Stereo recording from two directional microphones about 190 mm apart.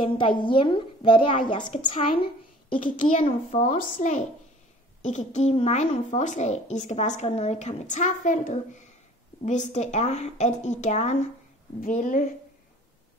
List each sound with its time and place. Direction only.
0.4 s a woman's voice: 25° left (ahead or behind)
3.0 s a woman's voice: 40° left (ahead or behind)